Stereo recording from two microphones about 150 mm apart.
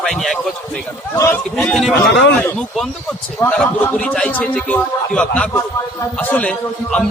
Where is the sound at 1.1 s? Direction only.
15° left (ahead or behind).